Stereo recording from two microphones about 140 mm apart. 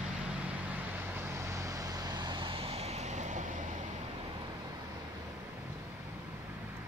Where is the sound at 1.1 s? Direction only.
15° right (ahead or behind); by 3.8 s 65° right (ahead or behind).